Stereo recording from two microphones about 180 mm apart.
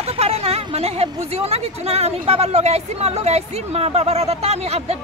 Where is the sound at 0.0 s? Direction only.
35° right (ahead or behind).